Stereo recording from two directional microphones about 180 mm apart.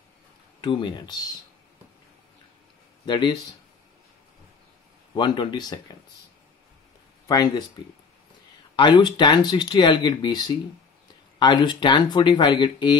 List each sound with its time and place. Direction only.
0.6 s speech: 25° left (ahead or behind)
3.1 s speech: 25° left (ahead or behind)
5.1 s speech: 25° left (ahead or behind)
7.2 s speech: 25° left (ahead or behind)
8.7 s speech: 25° left (ahead or behind)